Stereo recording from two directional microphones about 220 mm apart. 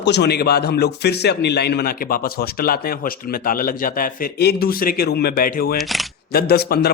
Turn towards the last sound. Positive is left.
turn(degrees=45)  # may be behind; listen again after turning